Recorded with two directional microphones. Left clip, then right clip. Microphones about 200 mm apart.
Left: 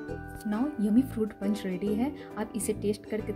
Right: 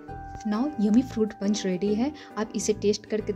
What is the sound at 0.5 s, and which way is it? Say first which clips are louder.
Speech: right 3 dB; 30° right (ahead or behind).